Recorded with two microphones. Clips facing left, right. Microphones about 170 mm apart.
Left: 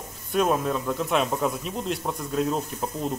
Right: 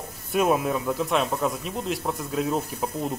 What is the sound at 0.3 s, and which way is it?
Speech, 5° right (ahead or behind).